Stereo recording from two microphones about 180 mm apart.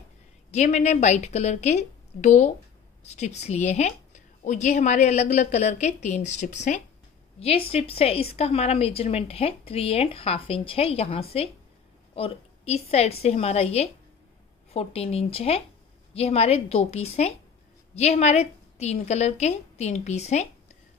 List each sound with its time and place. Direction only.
0.5 s a woman's voice: 40° left (ahead or behind)